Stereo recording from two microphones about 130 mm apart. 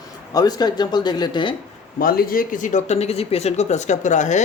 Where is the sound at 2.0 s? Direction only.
90° left; by 4.4 s 65° left (ahead or behind).